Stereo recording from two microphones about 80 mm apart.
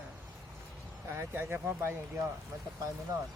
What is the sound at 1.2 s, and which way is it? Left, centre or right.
Speech, right.